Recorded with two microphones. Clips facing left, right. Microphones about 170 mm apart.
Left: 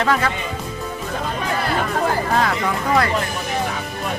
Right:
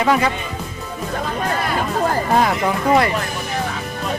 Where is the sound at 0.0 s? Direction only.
10° right (ahead or behind).